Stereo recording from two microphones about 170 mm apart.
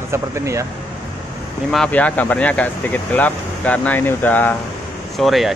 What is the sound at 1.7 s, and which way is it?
Speech, 5° left (ahead or behind).